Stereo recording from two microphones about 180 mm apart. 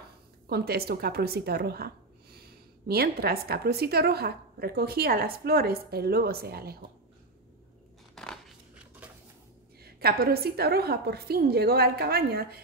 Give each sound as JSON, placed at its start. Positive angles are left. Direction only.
{"t": 0.5, "sound": "a woman's voice", "side_deg": -60}
{"t": 8.1, "sound": "a sound", "side_deg": 5}
{"t": 9.8, "sound": "a woman's voice", "side_deg": -60}